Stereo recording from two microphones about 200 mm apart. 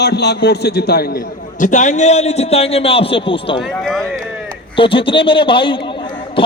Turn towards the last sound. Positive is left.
turn(degrees=25)  # may be behind; listen again after turning